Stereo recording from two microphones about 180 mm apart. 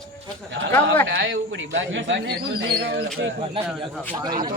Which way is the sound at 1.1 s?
90° right.